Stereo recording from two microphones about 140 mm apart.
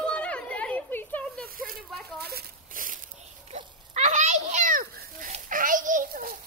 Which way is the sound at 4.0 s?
55° right (ahead or behind).